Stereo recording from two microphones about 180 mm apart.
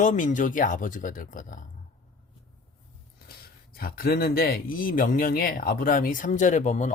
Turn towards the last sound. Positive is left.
turn(degrees=40)  # may be behind; listen again after turning